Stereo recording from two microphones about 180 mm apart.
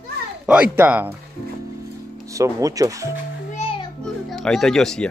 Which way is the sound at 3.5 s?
30° left (ahead or behind).